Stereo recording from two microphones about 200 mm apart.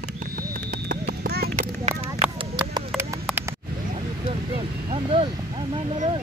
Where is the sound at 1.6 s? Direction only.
30° right (ahead or behind).